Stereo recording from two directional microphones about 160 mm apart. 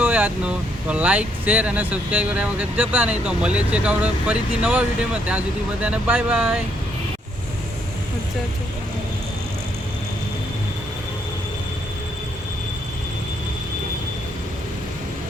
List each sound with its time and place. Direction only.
0.0 s speech: 10° right (ahead or behind)